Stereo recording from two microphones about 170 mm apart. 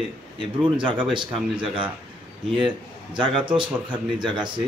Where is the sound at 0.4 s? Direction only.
30° right (ahead or behind).